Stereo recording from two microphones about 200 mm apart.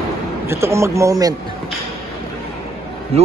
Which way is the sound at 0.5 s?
15° right (ahead or behind).